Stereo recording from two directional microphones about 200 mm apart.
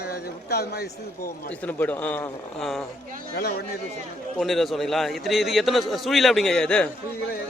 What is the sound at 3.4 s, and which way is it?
Speech, 50° left (ahead or behind).